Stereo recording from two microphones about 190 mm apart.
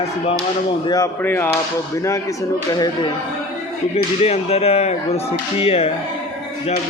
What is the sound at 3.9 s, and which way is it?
Speech, 30° left (ahead or behind).